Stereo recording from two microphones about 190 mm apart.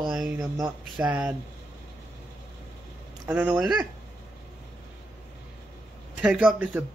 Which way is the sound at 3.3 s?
5° right (ahead or behind).